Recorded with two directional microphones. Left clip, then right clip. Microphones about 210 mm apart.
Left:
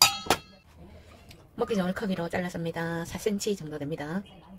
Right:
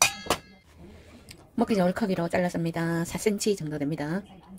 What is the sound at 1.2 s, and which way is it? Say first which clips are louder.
Speech: right 2 dB; 30° right (ahead or behind).